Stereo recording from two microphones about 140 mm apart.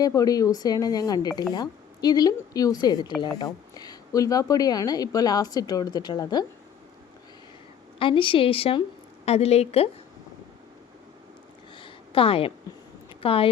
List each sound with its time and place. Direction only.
0.0 s a woman's voice: 25° left (ahead or behind)
7.9 s a woman's voice: 35° left (ahead or behind)
11.8 s a sound: 40° left (ahead or behind)
13.2 s a woman's voice: 40° left (ahead or behind)